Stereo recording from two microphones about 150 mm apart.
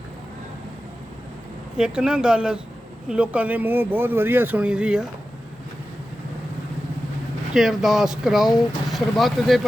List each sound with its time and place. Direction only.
1.8 s speech: 5° right (ahead or behind)
7.5 s speech: centre (ahead or behind)